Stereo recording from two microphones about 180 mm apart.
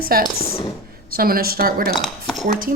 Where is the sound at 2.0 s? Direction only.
Centre (ahead or behind).